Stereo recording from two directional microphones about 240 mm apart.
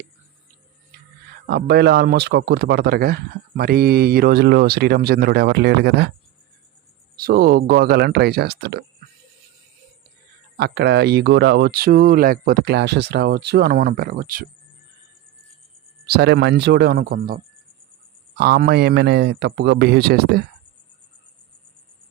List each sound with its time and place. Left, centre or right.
1.5 s speech: right
7.2 s speech: right
10.6 s speech: right
16.0 s speech: right